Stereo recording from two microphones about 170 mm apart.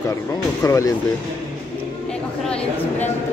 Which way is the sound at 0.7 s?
15° left (ahead or behind).